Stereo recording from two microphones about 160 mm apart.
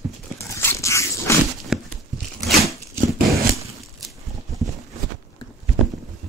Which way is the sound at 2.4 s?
Centre (ahead or behind).